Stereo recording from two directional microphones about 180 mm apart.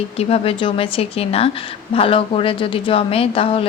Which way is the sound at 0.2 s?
35° left (ahead or behind).